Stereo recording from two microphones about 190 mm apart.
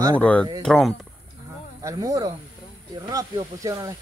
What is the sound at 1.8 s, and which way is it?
Speech, 15° right (ahead or behind).